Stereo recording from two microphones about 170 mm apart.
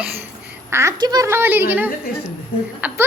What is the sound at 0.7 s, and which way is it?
A woman's voice, 20° right (ahead or behind).